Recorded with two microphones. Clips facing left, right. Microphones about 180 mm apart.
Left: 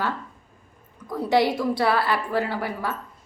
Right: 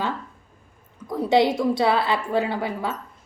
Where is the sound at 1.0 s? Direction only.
20° right (ahead or behind).